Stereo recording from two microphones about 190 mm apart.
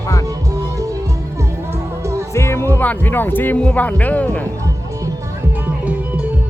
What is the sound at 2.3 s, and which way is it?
Speech, 15° left (ahead or behind).